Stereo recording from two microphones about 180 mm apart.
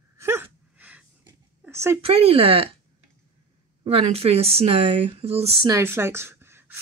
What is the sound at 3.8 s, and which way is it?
Speech, 35° right (ahead or behind).